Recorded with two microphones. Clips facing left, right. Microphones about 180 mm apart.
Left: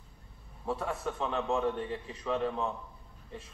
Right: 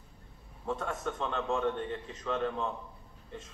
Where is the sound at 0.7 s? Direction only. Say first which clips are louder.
Left 1 dB; 10° left (ahead or behind).